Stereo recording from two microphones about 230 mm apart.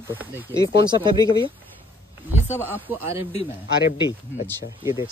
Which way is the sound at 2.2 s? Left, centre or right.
Centre.